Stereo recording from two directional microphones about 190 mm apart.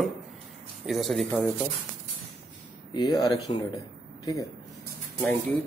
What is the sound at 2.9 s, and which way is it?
Speech, 20° left (ahead or behind).